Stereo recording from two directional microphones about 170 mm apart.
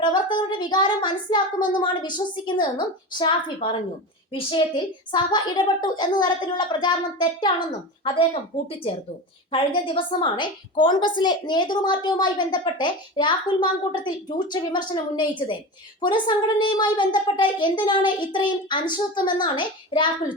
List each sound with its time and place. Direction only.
0.0 s a child's voice: 25° left (ahead or behind)
8.5 s a child's voice: 30° left (ahead or behind)